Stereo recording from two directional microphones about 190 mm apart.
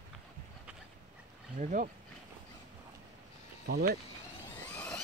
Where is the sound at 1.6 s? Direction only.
45° right (ahead or behind).